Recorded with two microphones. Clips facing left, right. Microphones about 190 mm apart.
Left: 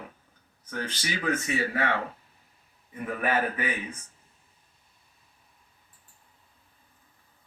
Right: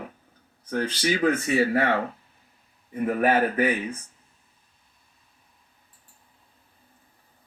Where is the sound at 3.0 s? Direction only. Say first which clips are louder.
Right 6 dB; 35° right (ahead or behind).